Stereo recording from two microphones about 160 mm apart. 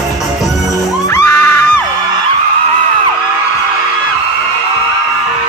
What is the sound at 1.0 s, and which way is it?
Music, 15° left (ahead or behind).